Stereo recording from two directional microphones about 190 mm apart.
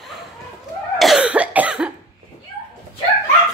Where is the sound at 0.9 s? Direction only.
Centre (ahead or behind).